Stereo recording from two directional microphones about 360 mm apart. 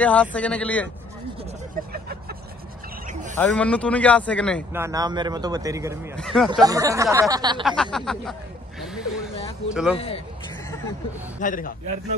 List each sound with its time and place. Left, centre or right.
0.0 s speech: centre
3.1 s a sound: right
3.3 s speech: centre
4.8 s speech: centre
7.6 s speech: centre
8.8 s a sound: centre
9.9 s speech: centre
11.3 s a man's voice: left